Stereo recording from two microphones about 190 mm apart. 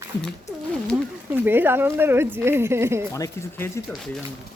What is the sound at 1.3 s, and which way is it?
Speech, 10° right (ahead or behind).